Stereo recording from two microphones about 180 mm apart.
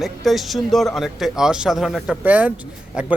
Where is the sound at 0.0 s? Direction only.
Centre (ahead or behind).